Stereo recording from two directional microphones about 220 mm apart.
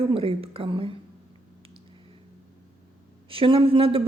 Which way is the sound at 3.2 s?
25° right (ahead or behind).